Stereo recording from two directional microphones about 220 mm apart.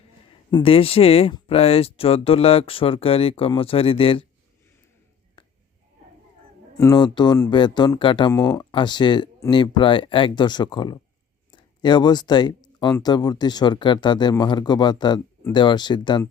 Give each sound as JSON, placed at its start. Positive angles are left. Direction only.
{"t": 0.5, "sound": "speech", "side_deg": 25}
{"t": 5.4, "sound": "a sound", "side_deg": 20}
{"t": 6.7, "sound": "speech", "side_deg": 15}